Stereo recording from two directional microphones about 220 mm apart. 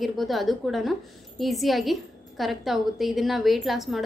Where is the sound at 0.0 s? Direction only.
Centre (ahead or behind).